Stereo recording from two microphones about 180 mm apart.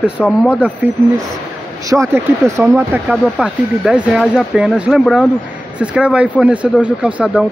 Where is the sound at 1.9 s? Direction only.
15° right (ahead or behind).